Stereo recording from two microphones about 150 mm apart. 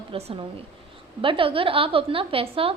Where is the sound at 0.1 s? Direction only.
40° right (ahead or behind).